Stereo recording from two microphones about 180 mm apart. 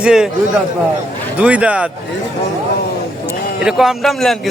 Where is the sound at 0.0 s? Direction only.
5° right (ahead or behind).